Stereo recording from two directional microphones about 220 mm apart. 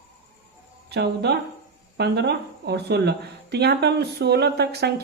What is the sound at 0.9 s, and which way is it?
Speech, 50° right (ahead or behind).